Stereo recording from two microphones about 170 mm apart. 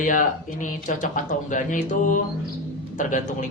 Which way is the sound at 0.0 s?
50° left (ahead or behind).